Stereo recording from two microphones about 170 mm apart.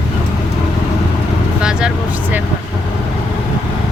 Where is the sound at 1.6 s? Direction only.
5° right (ahead or behind).